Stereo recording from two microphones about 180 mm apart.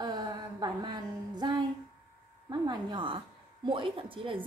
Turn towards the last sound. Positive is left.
turn(degrees=-30)  # may be behind; listen again after turning